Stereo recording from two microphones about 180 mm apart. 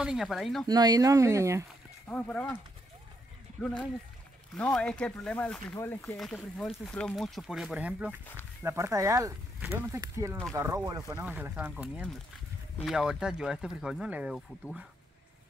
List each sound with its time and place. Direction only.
0.0 s speech: centre (ahead or behind)
0.7 s speech: 20° right (ahead or behind)
2.0 s speech: 10° left (ahead or behind)
3.6 s speech: 5° left (ahead or behind)